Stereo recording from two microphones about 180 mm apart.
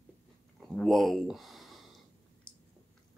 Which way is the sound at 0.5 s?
Centre (ahead or behind).